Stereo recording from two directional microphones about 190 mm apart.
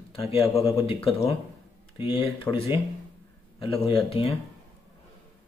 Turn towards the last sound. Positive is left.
turn(degrees=30)  # may be behind; listen again after turning